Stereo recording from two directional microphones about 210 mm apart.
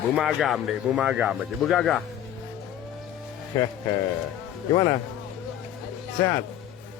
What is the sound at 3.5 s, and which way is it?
Speech, 15° left (ahead or behind).